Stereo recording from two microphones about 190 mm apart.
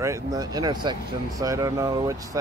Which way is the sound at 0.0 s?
15° right (ahead or behind).